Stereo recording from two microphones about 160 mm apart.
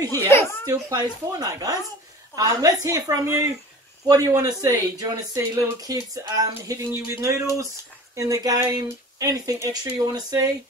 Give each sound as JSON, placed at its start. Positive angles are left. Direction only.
{"t": 0.1, "sound": "speech", "side_deg": 15}
{"t": 0.7, "sound": "speech", "side_deg": -20}